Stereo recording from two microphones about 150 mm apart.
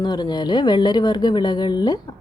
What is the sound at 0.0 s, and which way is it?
Speech, 30° left (ahead or behind).